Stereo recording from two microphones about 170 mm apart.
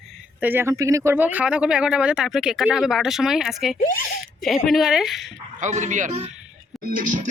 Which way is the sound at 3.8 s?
50° left (ahead or behind).